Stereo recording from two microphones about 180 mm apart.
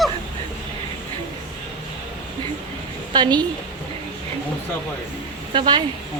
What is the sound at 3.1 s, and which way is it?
Speech, 25° right (ahead or behind).